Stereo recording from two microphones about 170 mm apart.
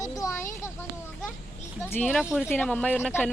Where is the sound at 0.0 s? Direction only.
20° left (ahead or behind).